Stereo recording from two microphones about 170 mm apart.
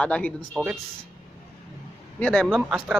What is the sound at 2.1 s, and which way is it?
Speech, 5° left (ahead or behind).